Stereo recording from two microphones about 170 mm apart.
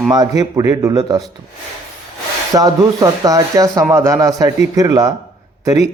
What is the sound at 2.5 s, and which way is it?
A man's voice, 20° right (ahead or behind).